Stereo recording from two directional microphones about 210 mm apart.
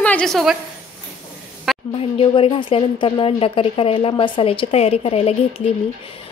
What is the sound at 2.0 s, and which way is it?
A woman's voice, 25° left (ahead or behind).